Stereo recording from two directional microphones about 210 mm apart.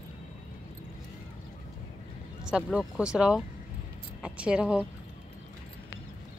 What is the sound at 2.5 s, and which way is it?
Speech, 5° right (ahead or behind).